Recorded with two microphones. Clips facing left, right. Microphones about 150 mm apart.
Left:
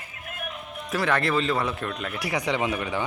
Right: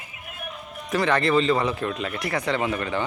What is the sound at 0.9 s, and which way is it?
Speech, centre (ahead or behind).